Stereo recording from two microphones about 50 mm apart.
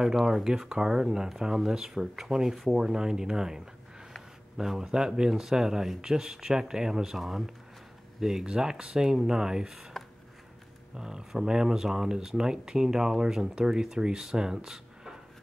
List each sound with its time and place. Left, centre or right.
0.0 s speech: centre